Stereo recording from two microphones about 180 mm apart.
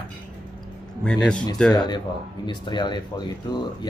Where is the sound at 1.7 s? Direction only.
25° left (ahead or behind).